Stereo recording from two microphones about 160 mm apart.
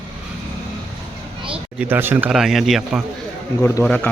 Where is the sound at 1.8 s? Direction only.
15° right (ahead or behind).